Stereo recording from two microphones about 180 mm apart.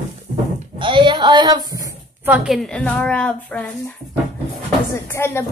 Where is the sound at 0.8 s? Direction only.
25° right (ahead or behind).